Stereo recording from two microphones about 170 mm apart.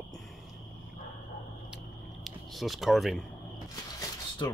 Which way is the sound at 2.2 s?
Centre (ahead or behind).